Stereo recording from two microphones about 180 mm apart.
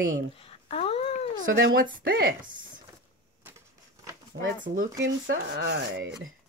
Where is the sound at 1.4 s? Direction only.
50° right (ahead or behind).